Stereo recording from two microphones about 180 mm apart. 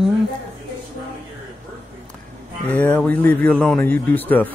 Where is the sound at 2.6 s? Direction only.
10° left (ahead or behind).